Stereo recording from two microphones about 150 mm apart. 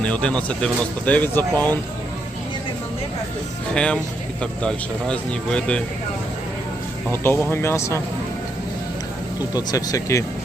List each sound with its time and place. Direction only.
0.0 s speech: 5° left (ahead or behind)
3.8 s speech: 5° left (ahead or behind)
7.1 s speech: 15° left (ahead or behind)
9.6 s speech: 25° left (ahead or behind)